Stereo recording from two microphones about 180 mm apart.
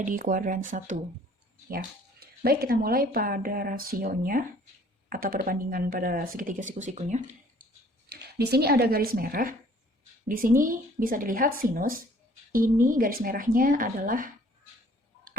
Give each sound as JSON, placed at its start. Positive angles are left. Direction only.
{"t": 0.0, "sound": "speech", "side_deg": -50}
{"t": 1.7, "sound": "speech", "side_deg": -60}
{"t": 8.1, "sound": "speech", "side_deg": -65}